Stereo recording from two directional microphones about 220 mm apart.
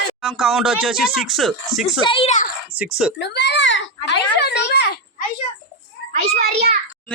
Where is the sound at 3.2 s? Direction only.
50° left (ahead or behind).